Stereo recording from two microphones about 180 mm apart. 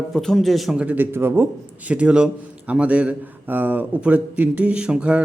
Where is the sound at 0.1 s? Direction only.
Centre (ahead or behind).